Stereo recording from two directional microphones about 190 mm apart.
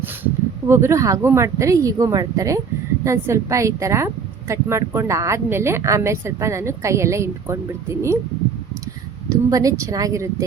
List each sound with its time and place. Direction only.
0.7 s a woman's voice: 15° right (ahead or behind)
9.3 s a woman's voice: 15° right (ahead or behind)